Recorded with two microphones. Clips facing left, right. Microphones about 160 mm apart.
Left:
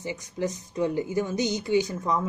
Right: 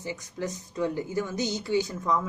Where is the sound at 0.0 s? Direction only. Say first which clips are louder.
Left 3 dB; 20° left (ahead or behind).